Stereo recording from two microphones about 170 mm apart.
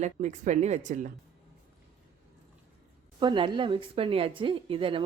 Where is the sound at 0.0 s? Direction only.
45° right (ahead or behind).